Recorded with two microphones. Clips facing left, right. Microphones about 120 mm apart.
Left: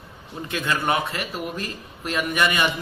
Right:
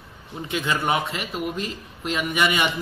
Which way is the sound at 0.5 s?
15° right (ahead or behind).